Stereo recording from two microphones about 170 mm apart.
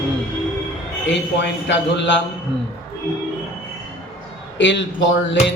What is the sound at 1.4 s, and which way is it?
Speech, 90° left.